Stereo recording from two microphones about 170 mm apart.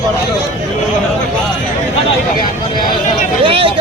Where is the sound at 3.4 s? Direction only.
30° right (ahead or behind).